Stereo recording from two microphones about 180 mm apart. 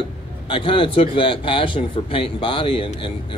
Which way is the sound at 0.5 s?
30° left (ahead or behind).